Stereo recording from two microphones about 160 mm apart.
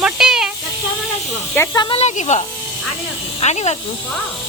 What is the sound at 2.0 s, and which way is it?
Speech, 45° left (ahead or behind).